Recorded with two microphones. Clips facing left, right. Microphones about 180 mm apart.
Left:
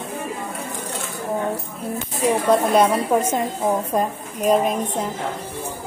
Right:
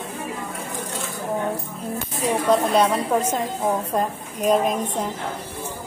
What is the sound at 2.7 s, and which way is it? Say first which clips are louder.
Speech: left 2 dB; 5° left (ahead or behind).